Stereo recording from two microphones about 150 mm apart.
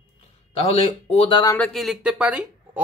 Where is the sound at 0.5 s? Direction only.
45° left (ahead or behind).